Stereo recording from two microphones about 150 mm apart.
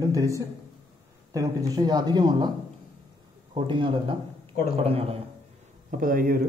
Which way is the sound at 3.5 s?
35° right (ahead or behind).